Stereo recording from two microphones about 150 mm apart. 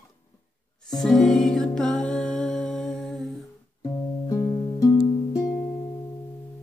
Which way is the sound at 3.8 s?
20° left (ahead or behind).